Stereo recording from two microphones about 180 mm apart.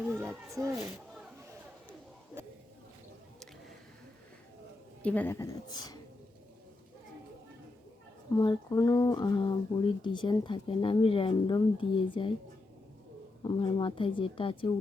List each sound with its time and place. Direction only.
0.2 s speech: 15° right (ahead or behind)
2.4 s a sound: 15° right (ahead or behind)
5.0 s speech: 10° left (ahead or behind)
8.3 s speech: 20° left (ahead or behind)
13.4 s speech: 25° left (ahead or behind)